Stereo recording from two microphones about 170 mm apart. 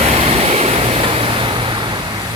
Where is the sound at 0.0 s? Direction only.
35° right (ahead or behind).